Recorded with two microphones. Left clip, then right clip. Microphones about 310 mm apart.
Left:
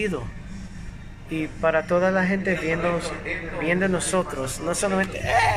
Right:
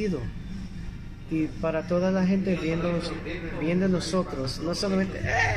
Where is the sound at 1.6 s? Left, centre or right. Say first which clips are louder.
Left 8 dB; left.